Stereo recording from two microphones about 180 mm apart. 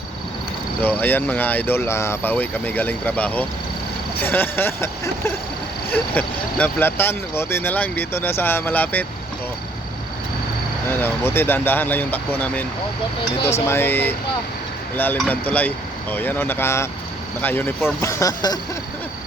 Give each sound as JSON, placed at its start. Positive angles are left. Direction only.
{"t": 0.8, "sound": "speech", "side_deg": 10}
{"t": 10.9, "sound": "speech", "side_deg": 10}